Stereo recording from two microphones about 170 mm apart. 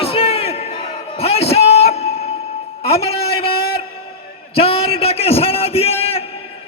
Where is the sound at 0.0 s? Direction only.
35° left (ahead or behind).